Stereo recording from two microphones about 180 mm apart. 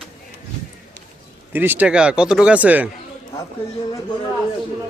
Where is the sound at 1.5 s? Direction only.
10° right (ahead or behind).